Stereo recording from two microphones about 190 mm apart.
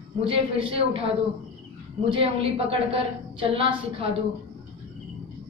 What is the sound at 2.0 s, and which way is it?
A woman's voice, 30° right (ahead or behind).